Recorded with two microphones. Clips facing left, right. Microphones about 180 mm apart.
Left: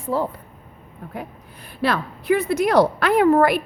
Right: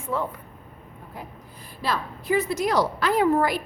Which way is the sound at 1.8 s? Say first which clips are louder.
Left 5 dB; 65° left (ahead or behind).